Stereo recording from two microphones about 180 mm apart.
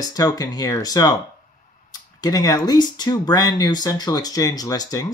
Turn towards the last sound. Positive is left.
turn(degrees=20)  # may be behind; listen again after turning